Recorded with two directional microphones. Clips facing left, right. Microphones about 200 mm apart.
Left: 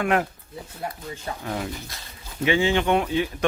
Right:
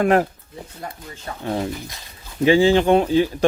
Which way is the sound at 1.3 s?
10° left (ahead or behind).